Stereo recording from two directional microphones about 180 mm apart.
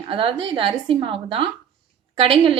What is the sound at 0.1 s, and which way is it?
Speech, 30° right (ahead or behind).